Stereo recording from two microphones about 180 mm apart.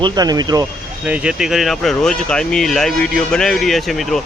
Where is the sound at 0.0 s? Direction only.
20° right (ahead or behind).